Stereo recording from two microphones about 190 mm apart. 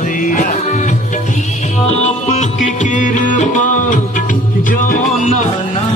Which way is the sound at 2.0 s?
40° left (ahead or behind).